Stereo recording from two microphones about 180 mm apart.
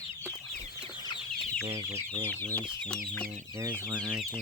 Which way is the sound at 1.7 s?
30° right (ahead or behind).